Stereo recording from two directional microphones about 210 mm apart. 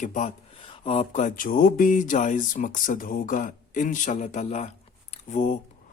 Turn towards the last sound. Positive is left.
turn(degrees=35)  # may be behind; listen again after turning